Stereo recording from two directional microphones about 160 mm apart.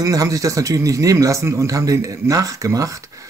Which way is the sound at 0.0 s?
20° right (ahead or behind).